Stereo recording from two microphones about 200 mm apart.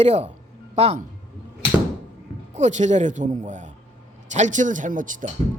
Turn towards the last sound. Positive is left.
turn(degrees=-40)  # may be behind; listen again after turning